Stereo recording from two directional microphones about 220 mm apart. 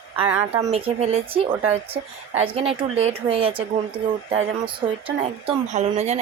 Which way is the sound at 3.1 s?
25° right (ahead or behind).